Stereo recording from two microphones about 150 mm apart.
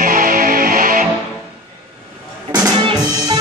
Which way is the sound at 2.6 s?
25° right (ahead or behind).